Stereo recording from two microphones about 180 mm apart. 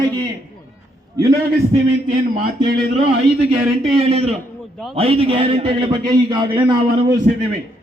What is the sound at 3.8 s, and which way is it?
A man's voice, 35° right (ahead or behind).